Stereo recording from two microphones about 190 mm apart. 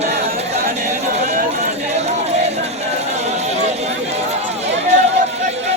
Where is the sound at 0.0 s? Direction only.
35° right (ahead or behind).